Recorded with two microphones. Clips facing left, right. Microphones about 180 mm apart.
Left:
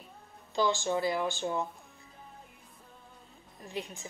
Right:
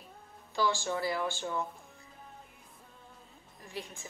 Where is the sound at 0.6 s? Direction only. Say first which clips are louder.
Left 3 dB; 20° left (ahead or behind).